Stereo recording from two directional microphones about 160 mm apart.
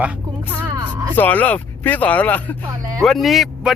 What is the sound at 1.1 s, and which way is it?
Speech, 10° left (ahead or behind).